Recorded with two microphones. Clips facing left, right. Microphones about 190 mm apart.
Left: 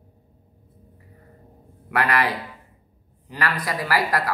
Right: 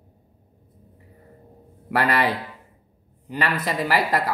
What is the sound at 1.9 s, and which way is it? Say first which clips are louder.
Speech: right 1 dB; 30° right (ahead or behind).